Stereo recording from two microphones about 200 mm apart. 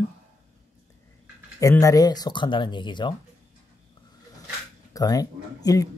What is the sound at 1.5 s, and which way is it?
Speech, 15° left (ahead or behind).